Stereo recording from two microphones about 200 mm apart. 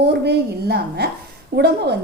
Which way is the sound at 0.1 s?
55° right (ahead or behind).